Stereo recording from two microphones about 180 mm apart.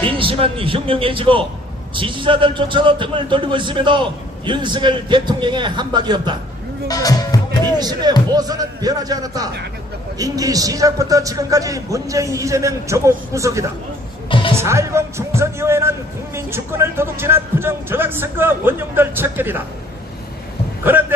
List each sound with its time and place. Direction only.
0.1 s a man's voice: 30° right (ahead or behind)
6.8 s music: 20° left (ahead or behind)
7.8 s music: 20° right (ahead or behind)
8.3 s a man's voice: 20° right (ahead or behind)
14.3 s music: 30° left (ahead or behind)
14.5 s speech: 15° right (ahead or behind)
20.8 s speech: 10° right (ahead or behind)